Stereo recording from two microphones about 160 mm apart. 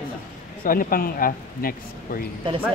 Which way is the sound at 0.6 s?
65° left (ahead or behind).